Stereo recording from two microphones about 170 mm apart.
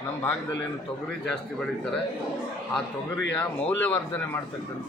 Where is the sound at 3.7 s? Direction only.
10° left (ahead or behind).